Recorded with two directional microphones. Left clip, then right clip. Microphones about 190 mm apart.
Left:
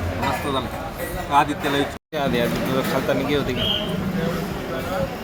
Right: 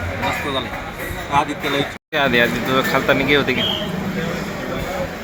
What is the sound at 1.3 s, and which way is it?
Speech, 20° left (ahead or behind).